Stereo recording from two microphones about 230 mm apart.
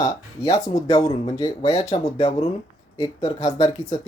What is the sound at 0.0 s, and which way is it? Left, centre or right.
Speech, centre.